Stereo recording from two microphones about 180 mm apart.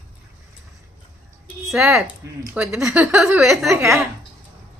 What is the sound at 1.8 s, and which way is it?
A woman's voice, 10° right (ahead or behind).